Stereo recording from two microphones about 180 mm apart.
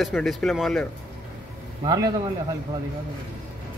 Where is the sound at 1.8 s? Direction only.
20° right (ahead or behind).